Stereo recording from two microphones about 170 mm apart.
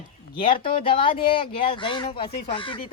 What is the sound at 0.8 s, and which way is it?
Speech, 30° left (ahead or behind).